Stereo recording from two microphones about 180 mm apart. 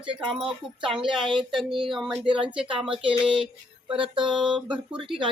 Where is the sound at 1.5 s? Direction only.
Centre (ahead or behind).